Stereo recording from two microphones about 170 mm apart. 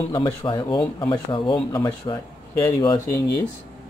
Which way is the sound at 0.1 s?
30° left (ahead or behind).